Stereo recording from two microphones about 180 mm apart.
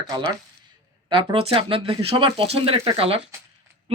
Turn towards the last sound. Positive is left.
turn(degrees=-30)  # may be behind; listen again after turning